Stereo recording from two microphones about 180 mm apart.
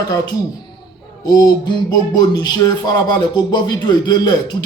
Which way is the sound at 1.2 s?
20° left (ahead or behind).